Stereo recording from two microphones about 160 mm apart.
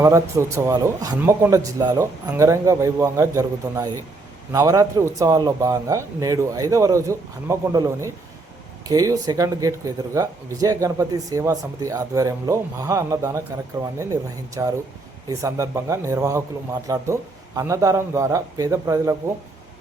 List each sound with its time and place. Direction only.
0.0 s a man's voice: 15° right (ahead or behind)